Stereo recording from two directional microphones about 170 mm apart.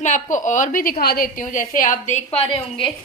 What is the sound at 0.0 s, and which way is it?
A woman's voice, 45° left (ahead or behind).